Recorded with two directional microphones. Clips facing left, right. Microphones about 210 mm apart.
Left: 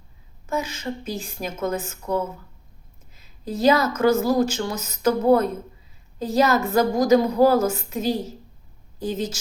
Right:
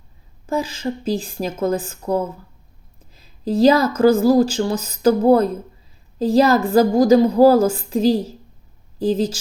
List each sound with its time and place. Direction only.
0.4 s speech: 30° right (ahead or behind)